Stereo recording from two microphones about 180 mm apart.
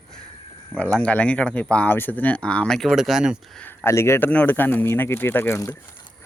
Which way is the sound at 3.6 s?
10° left (ahead or behind).